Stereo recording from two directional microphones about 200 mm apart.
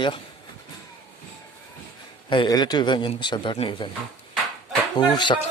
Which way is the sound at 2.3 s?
20° left (ahead or behind).